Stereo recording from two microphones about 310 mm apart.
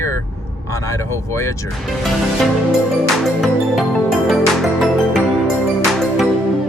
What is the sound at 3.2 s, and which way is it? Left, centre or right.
Music, centre.